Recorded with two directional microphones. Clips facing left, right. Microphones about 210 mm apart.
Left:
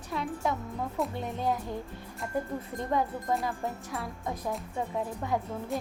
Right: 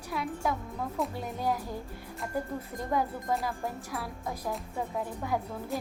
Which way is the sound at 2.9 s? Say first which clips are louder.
Left 1 dB; 5° right (ahead or behind).